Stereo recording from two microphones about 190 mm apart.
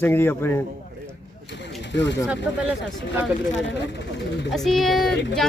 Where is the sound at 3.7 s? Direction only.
65° left (ahead or behind).